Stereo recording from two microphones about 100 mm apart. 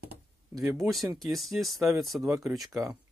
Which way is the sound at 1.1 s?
Centre (ahead or behind).